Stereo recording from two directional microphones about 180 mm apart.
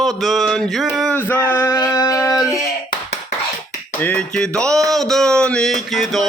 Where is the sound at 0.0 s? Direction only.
Centre (ahead or behind).